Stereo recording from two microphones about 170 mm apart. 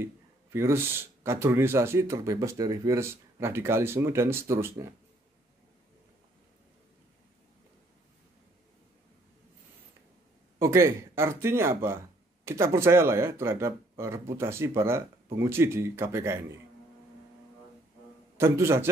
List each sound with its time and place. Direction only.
0.0 s speech: 15° right (ahead or behind)
10.6 s speech: 15° right (ahead or behind)
18.4 s speech: 15° right (ahead or behind)